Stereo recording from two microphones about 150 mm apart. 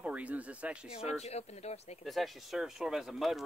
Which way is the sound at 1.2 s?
45° left (ahead or behind).